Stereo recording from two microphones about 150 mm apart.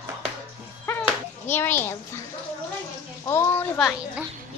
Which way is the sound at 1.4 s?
15° left (ahead or behind).